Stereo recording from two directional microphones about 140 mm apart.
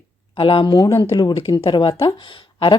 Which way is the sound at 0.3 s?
40° left (ahead or behind).